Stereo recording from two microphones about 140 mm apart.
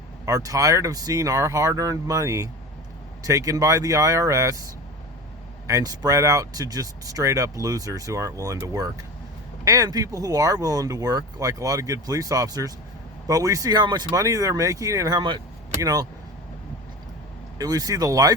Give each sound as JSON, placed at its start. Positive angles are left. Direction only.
{"t": 0.3, "sound": "speech", "side_deg": -25}
{"t": 5.6, "sound": "speech", "side_deg": -25}
{"t": 17.6, "sound": "speech", "side_deg": -25}